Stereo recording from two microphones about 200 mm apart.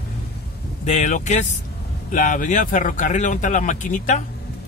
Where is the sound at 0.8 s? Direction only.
35° left (ahead or behind).